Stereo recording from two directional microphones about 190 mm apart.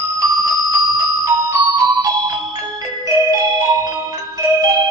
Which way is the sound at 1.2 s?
20° right (ahead or behind).